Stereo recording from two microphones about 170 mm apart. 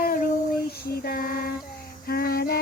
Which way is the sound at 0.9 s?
65° left (ahead or behind).